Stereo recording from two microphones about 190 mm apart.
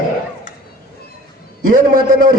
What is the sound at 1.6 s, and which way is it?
Speech, 45° right (ahead or behind).